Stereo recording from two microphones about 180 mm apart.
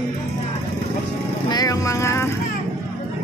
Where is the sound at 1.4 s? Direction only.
20° left (ahead or behind).